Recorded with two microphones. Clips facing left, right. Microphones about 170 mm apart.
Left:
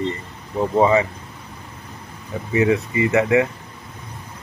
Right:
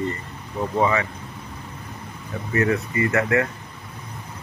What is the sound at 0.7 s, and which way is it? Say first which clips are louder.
Speech: left 5 dB; 30° left (ahead or behind).